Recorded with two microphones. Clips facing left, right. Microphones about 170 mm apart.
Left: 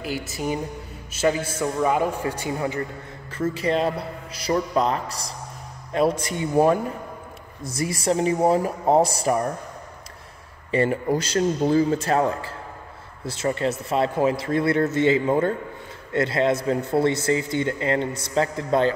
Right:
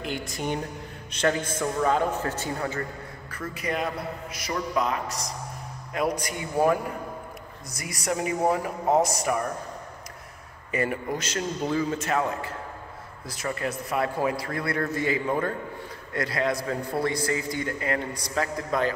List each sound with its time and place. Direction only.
0.0 s a woman's voice: 5° left (ahead or behind)
3.3 s a man's voice: 25° left (ahead or behind)
10.7 s a man's voice: 30° left (ahead or behind)